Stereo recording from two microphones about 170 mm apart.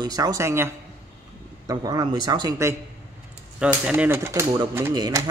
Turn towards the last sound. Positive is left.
turn(degrees=-20)  # may be behind; listen again after turning